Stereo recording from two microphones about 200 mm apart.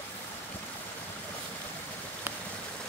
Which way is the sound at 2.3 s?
10° right (ahead or behind).